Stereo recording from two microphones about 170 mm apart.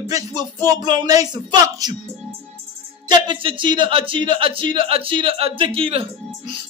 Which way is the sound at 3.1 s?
30° right (ahead or behind).